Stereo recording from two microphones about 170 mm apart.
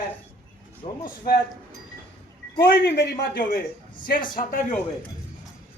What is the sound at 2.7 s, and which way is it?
A man's voice, 60° left (ahead or behind).